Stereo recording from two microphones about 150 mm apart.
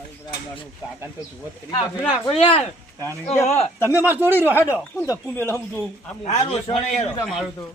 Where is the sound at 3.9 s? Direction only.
15° right (ahead or behind).